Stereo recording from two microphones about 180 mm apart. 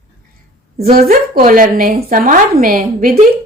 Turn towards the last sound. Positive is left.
turn(degrees=-55)  # may be behind; listen again after turning